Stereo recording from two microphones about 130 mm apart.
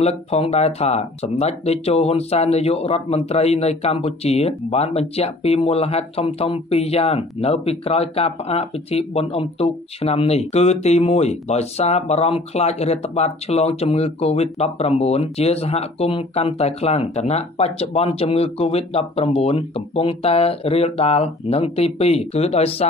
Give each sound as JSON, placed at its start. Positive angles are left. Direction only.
{"t": 0.0, "sound": "speech", "side_deg": 55}